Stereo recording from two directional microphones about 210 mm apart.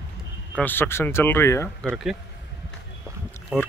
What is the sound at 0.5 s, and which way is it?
Speech, 10° left (ahead or behind).